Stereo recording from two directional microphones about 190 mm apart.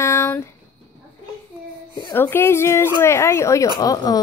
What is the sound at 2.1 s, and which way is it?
Speech, 10° left (ahead or behind).